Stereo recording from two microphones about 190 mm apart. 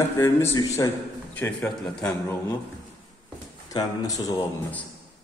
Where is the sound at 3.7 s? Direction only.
20° left (ahead or behind).